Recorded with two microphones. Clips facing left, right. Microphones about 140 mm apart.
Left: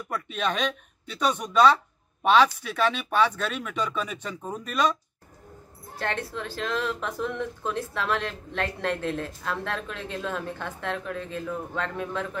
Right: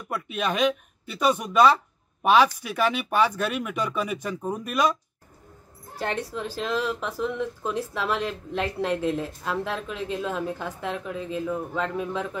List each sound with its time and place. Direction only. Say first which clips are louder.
0.1 s speech: right 1 dB; 10° right (ahead or behind)
5.9 s speech: right 2 dB; 10° right (ahead or behind)